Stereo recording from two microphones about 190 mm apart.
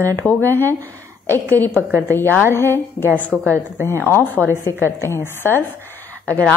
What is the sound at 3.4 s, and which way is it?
Speech, 15° right (ahead or behind).